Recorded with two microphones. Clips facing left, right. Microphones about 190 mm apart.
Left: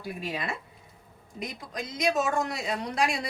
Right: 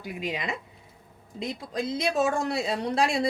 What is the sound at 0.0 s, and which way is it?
Speech, 20° right (ahead or behind).